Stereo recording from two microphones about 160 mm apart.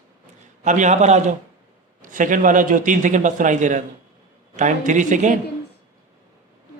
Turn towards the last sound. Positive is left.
turn(degrees=-50)  # may be behind; listen again after turning